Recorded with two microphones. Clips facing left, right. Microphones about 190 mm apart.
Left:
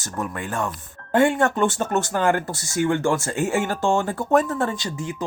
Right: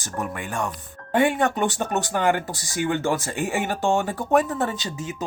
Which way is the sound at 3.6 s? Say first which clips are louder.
Right 1 dB; 20° right (ahead or behind).